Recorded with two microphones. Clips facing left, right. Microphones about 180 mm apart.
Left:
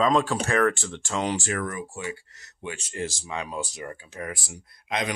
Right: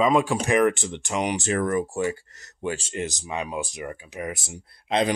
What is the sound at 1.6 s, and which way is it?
Speech, 40° right (ahead or behind).